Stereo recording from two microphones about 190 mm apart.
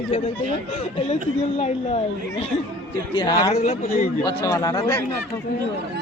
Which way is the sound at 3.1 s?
25° left (ahead or behind).